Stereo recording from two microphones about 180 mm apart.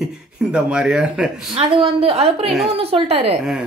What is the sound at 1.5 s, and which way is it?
Speech, 30° right (ahead or behind).